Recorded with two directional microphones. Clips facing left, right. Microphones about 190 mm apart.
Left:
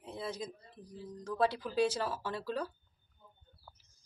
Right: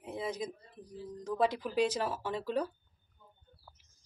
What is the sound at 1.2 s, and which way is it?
Speech, 15° right (ahead or behind).